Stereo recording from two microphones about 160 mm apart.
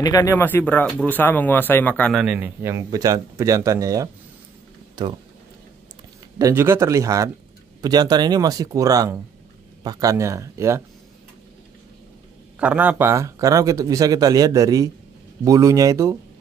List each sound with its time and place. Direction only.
0.0 s speech: 20° left (ahead or behind)
2.1 s speech: 10° right (ahead or behind); by 5.1 s 25° right (ahead or behind)
6.3 s speech: 20° right (ahead or behind)
12.5 s speech: 10° right (ahead or behind)